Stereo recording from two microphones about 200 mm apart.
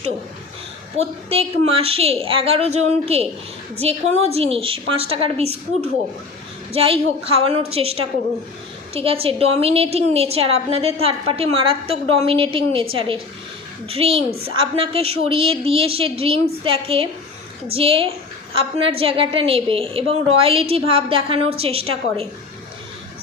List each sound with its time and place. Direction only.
0.9 s a woman's voice: 30° right (ahead or behind)